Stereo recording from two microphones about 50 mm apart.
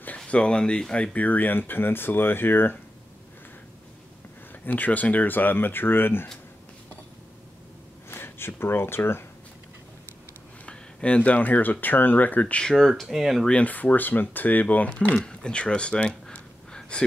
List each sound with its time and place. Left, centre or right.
0.3 s speech: centre
1.1 s speech: left
4.6 s speech: left
8.1 s speech: left
10.6 s speech: left
12.7 s speech: centre
13.5 s speech: left
15.2 s speech: centre